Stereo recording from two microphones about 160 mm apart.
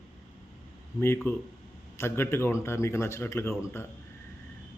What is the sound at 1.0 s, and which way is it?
A man's voice, 15° left (ahead or behind).